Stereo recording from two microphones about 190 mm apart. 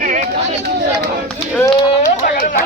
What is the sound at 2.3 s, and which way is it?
Speech, 45° left (ahead or behind).